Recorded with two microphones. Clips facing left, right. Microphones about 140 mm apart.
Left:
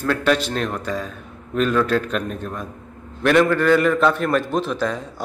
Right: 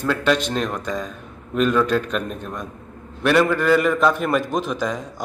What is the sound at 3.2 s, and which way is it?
A man's voice, 5° right (ahead or behind).